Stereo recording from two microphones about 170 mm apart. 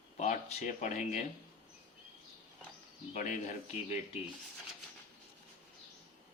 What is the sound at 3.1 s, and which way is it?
Speech, 45° left (ahead or behind).